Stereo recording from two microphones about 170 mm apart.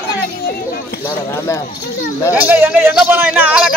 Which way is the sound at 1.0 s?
15° left (ahead or behind).